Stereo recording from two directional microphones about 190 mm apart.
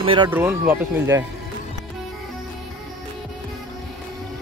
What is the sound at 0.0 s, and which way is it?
Speech, 25° right (ahead or behind).